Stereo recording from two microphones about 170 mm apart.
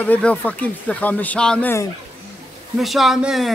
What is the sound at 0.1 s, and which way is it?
Speech, 10° left (ahead or behind).